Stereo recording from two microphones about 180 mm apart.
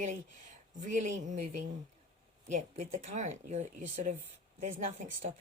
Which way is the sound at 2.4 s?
40° right (ahead or behind).